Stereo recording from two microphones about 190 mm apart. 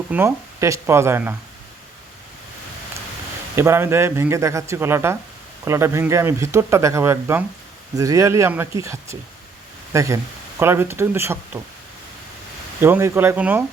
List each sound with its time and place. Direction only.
0.1 s speech: 15° right (ahead or behind)
3.5 s speech: 15° right (ahead or behind)
12.8 s speech: 15° right (ahead or behind)